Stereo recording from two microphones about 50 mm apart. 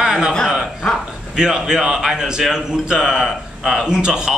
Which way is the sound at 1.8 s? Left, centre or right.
Centre.